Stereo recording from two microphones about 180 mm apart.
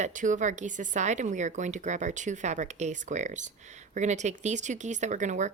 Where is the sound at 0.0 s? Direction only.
45° right (ahead or behind).